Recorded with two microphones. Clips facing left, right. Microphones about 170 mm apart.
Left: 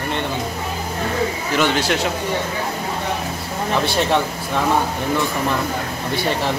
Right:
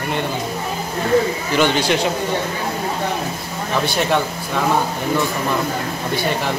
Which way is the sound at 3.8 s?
Centre (ahead or behind).